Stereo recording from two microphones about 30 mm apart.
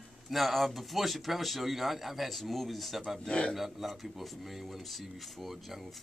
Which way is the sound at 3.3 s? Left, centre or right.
Left.